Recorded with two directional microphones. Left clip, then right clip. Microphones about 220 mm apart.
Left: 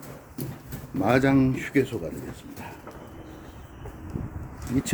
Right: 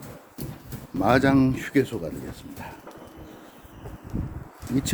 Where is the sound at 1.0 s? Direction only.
20° right (ahead or behind).